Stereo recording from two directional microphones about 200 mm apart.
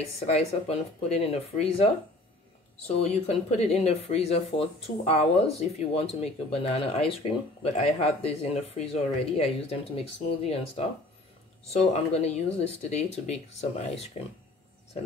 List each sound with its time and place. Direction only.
0.3 s speech: 30° left (ahead or behind)
2.9 s speech: 30° left (ahead or behind)